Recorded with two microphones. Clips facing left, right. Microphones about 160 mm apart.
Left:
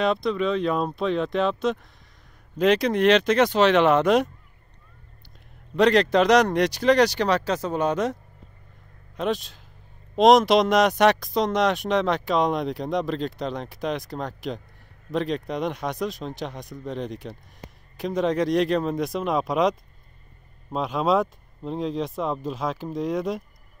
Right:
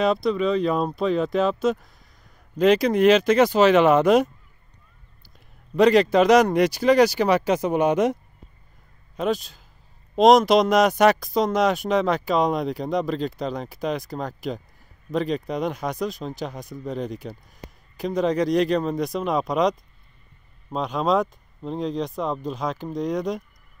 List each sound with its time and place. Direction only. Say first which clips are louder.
0.0 s speech: right 2 dB; centre (ahead or behind)
5.8 s speech: right 2 dB; 5° right (ahead or behind)
9.1 s a man's voice: right 2 dB; centre (ahead or behind)